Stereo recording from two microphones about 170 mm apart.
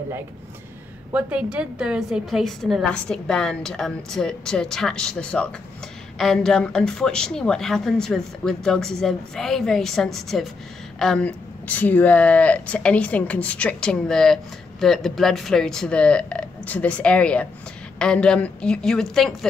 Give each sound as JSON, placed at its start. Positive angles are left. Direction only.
{"t": 1.1, "sound": "a woman's voice", "side_deg": -5}